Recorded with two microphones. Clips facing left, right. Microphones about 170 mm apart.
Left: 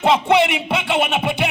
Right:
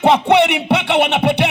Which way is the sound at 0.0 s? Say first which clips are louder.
Right 3 dB; 65° right (ahead or behind).